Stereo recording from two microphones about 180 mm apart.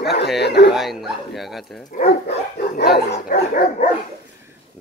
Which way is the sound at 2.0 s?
60° left (ahead or behind).